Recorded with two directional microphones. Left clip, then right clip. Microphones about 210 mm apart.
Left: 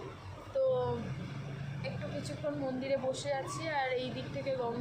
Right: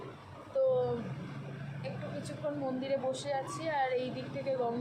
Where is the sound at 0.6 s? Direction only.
20° left (ahead or behind).